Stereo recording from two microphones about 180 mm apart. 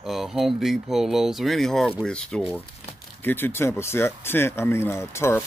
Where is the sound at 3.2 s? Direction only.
10° left (ahead or behind).